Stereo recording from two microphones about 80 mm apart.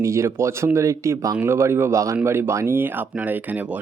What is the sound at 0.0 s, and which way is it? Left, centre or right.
Speech, right.